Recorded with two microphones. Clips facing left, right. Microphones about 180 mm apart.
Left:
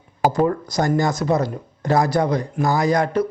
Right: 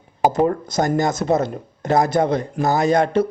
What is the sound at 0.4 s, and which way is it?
A man's voice, 20° right (ahead or behind).